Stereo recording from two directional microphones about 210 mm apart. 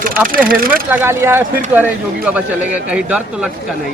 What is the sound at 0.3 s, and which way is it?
Speech, 40° right (ahead or behind).